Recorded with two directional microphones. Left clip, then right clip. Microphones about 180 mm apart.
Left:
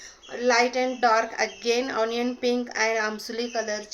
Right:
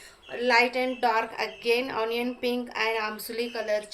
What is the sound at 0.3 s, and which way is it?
A woman's voice, 30° left (ahead or behind).